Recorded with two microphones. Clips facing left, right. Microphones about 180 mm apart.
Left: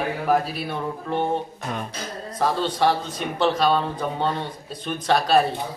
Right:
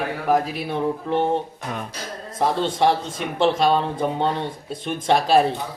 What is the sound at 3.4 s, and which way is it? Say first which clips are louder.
Speech: right 2 dB; 25° right (ahead or behind).